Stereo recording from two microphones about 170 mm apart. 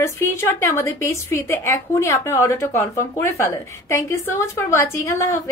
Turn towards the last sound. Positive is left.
turn(degrees=15)  # may be behind; listen again after turning